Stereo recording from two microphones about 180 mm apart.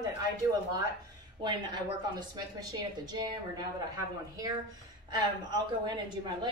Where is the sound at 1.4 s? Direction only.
25° right (ahead or behind).